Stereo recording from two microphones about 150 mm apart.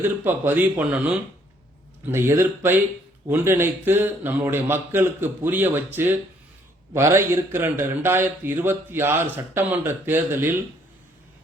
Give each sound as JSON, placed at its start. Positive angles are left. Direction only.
{"t": 0.3, "sound": "a man's voice", "side_deg": -15}